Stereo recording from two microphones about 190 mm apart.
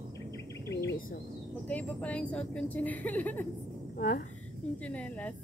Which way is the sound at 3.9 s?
45° left (ahead or behind).